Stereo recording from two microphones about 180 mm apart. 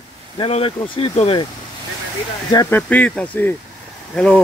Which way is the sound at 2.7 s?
10° left (ahead or behind).